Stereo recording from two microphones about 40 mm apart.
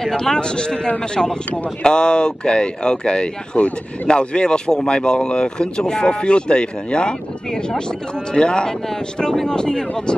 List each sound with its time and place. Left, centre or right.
0.0 s speech: centre
3.5 s speech: left
4.1 s speech: left